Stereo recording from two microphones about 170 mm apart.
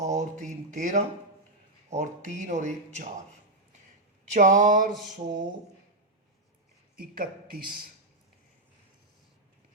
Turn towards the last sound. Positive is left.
turn(degrees=-60)  # may be behind; listen again after turning